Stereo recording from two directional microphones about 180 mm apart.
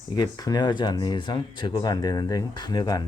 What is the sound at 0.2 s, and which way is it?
Speech, 20° left (ahead or behind).